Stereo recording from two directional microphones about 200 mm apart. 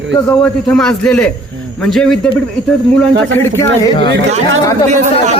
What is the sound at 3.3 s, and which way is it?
Speech, 15° left (ahead or behind).